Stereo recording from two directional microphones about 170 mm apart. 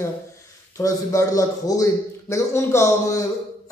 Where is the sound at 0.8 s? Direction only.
20° left (ahead or behind).